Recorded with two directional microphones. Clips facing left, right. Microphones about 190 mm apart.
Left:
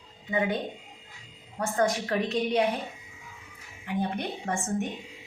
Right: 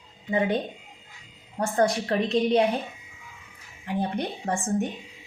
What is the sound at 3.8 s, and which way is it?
A woman's voice, 35° right (ahead or behind).